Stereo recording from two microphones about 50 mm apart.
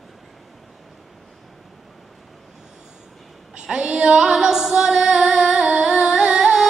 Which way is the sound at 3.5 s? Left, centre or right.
Centre.